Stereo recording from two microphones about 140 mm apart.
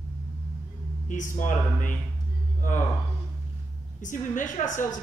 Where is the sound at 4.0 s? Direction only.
65° left (ahead or behind).